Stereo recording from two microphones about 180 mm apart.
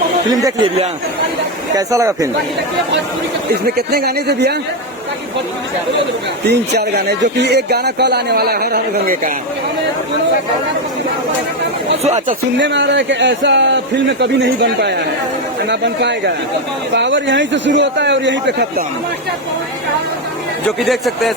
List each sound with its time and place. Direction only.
0.3 s speech: 25° right (ahead or behind)
1.7 s speech: 15° right (ahead or behind)
3.5 s speech: 60° right (ahead or behind)
6.4 s speech: 65° right (ahead or behind)
12.5 s a man's voice: 85° right
16.9 s speech: 85° right
20.7 s speech: centre (ahead or behind)